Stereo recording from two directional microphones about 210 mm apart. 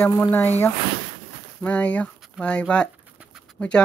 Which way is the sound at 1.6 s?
5° left (ahead or behind).